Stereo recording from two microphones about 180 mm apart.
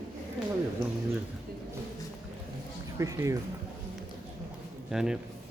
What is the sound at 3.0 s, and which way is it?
Speech, 15° right (ahead or behind).